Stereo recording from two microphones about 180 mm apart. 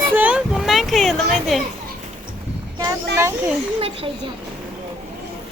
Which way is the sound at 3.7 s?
30° right (ahead or behind).